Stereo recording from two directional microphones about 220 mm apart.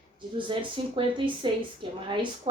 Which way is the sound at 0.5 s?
25° right (ahead or behind).